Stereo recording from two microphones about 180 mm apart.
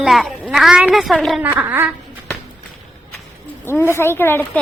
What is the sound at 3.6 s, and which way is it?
Speech, 10° left (ahead or behind).